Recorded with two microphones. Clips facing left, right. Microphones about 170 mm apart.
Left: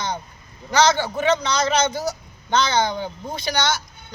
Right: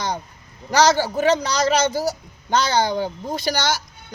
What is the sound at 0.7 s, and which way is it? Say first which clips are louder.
A man's voice: right 2 dB; 40° right (ahead or behind).